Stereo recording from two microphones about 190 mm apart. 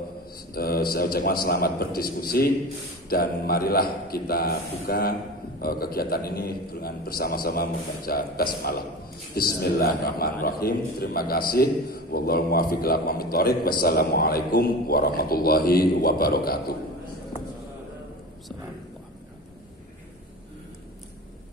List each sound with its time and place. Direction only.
0.5 s a man's voice: 50° left (ahead or behind)